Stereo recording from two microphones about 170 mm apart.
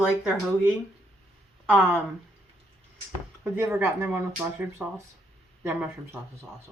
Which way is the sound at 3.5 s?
15° right (ahead or behind).